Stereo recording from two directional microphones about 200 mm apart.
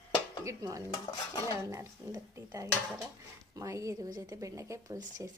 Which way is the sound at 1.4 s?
15° right (ahead or behind).